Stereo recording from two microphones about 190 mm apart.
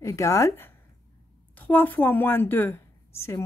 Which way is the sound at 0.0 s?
15° left (ahead or behind).